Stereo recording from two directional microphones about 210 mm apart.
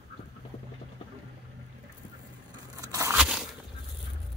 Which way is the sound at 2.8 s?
15° right (ahead or behind).